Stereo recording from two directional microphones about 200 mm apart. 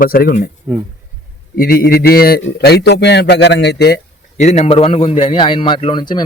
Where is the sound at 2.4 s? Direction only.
55° left (ahead or behind).